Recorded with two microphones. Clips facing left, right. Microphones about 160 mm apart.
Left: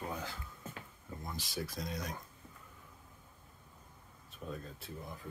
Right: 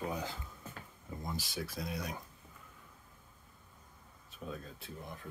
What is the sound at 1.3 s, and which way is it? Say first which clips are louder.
Speech: left 1 dB; centre (ahead or behind).